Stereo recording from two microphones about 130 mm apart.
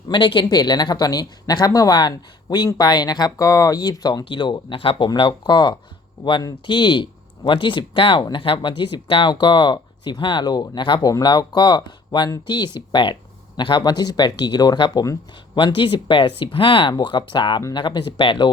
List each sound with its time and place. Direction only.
0.1 s speech: 40° left (ahead or behind)
15.5 s speech: 40° left (ahead or behind)